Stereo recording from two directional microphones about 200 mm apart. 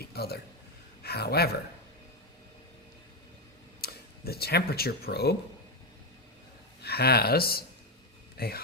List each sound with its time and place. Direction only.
0.0 s a sound: 50° left (ahead or behind)
1.0 s speech: 55° left (ahead or behind)
3.8 s speech: 50° left (ahead or behind)
6.8 s speech: 55° left (ahead or behind)